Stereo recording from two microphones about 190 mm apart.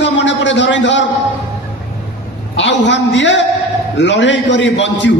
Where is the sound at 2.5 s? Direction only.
70° left (ahead or behind).